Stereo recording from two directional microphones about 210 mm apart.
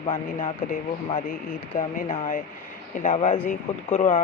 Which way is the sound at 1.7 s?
35° left (ahead or behind).